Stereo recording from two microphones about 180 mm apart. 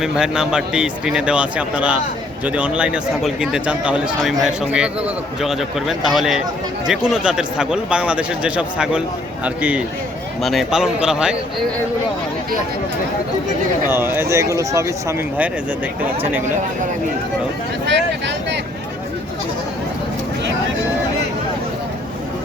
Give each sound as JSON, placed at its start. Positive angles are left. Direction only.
{"t": 0.0, "sound": "speech", "side_deg": -5}
{"t": 13.8, "sound": "speech", "side_deg": -10}
{"t": 17.8, "sound": "vehicle", "side_deg": -75}